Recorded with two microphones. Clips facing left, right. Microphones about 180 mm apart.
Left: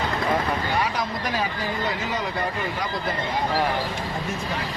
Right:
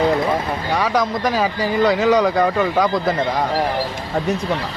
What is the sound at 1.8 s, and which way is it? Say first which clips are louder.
Speech: right 16 dB; 80° right.